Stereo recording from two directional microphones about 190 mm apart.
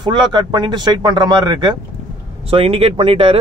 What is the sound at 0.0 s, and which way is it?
Speech, 25° right (ahead or behind).